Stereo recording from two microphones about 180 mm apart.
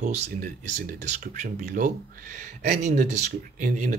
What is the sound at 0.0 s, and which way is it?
Speech, 40° right (ahead or behind).